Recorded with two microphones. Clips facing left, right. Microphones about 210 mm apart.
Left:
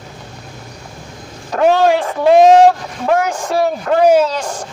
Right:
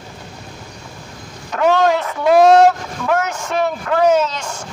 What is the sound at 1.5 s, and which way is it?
Speech, 30° left (ahead or behind).